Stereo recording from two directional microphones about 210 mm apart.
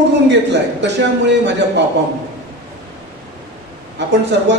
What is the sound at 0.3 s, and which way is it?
A man's voice, 55° right (ahead or behind).